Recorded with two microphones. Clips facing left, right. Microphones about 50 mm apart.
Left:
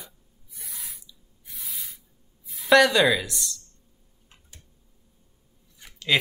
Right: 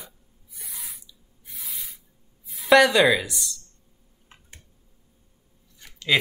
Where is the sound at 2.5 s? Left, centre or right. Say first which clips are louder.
Right 1 dB; centre.